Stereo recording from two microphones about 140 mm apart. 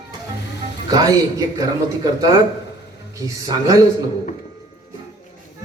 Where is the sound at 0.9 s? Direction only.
25° right (ahead or behind).